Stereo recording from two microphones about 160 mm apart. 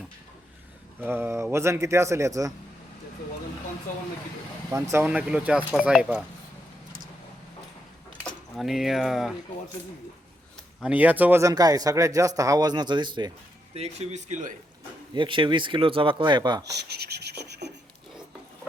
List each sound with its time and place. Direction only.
1.0 s speech: 15° right (ahead or behind)
4.7 s speech: 15° right (ahead or behind)
8.5 s speech: centre (ahead or behind)
10.8 s speech: 10° right (ahead or behind); by 13.3 s 30° right (ahead or behind)
13.7 s speech: 40° right (ahead or behind)
15.1 s speech: 30° right (ahead or behind)
16.7 s rub: 90° right